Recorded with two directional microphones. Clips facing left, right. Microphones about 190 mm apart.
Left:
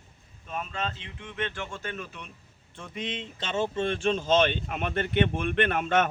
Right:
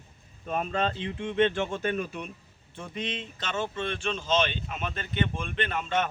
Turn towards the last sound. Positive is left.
turn(degrees=55)  # may be behind; listen again after turning